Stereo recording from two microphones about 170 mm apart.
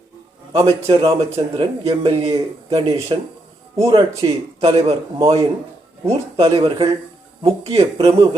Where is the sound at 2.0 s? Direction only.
35° right (ahead or behind).